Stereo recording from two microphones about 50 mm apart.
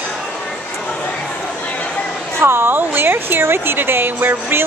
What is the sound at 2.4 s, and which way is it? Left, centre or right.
Speech, right.